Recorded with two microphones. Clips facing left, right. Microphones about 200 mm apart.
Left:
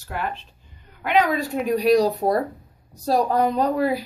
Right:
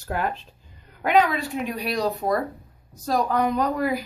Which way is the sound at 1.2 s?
40° left (ahead or behind).